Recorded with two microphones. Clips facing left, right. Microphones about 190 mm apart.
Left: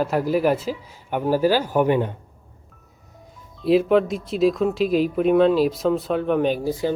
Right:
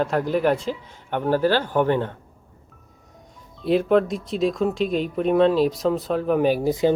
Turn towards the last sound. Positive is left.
turn(degrees=-20)  # may be behind; listen again after turning